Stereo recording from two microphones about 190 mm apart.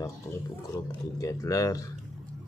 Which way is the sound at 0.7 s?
15° left (ahead or behind).